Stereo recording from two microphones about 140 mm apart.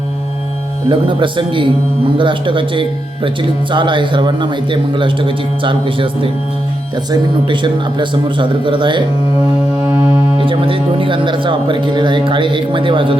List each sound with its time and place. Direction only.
0.9 s speech: 35° right (ahead or behind)
10.4 s speech: 40° right (ahead or behind)